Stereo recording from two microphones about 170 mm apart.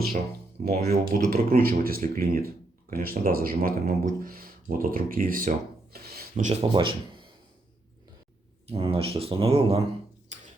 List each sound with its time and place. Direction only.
0.6 s speech: 65° right (ahead or behind)
6.4 s speech: 35° right (ahead or behind)
8.6 s speech: 35° right (ahead or behind)
10.3 s a sound: 40° right (ahead or behind)